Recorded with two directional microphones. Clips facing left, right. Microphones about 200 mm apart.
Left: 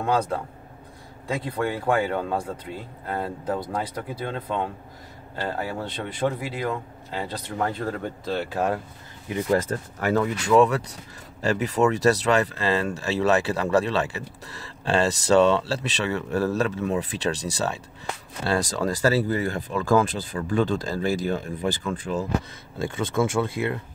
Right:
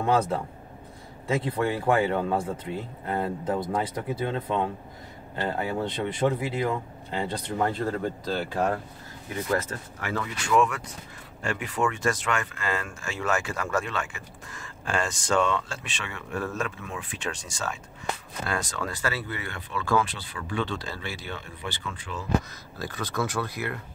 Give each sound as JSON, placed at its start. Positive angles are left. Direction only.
{"t": 0.0, "sound": "speech", "side_deg": -5}
{"t": 9.3, "sound": "speech", "side_deg": 30}
{"t": 22.8, "sound": "speech", "side_deg": 25}